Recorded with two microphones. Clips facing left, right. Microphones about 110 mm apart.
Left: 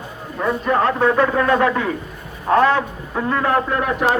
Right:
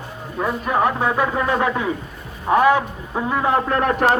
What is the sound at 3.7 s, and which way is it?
Speech, 50° right (ahead or behind).